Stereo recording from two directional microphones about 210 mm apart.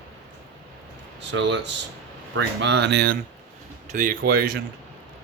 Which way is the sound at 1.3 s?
60° right (ahead or behind).